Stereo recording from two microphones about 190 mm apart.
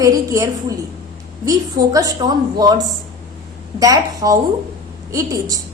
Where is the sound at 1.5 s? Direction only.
20° right (ahead or behind).